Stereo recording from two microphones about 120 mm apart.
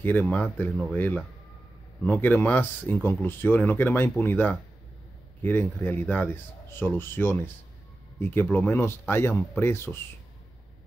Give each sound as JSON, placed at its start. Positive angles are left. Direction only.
{"t": 0.0, "sound": "speech", "side_deg": 15}